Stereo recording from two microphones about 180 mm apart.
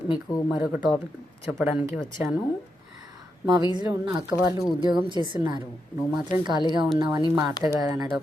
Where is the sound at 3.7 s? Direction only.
20° right (ahead or behind).